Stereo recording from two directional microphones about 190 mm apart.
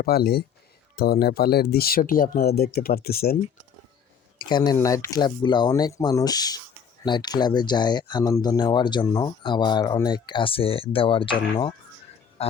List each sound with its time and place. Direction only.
0.0 s speech: 55° left (ahead or behind)
4.4 s speech: 25° left (ahead or behind)
12.4 s a sound: 30° left (ahead or behind)